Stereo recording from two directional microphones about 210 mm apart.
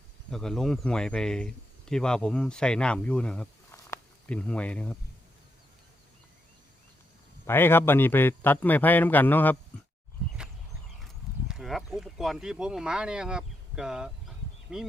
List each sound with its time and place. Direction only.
0.3 s speech: centre (ahead or behind)
7.4 s a man's voice: 10° left (ahead or behind)
11.0 s a sound: centre (ahead or behind)